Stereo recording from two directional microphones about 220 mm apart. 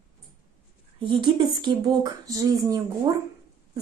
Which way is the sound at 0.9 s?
20° right (ahead or behind).